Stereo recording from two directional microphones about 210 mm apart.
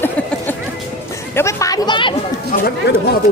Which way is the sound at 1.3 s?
15° left (ahead or behind).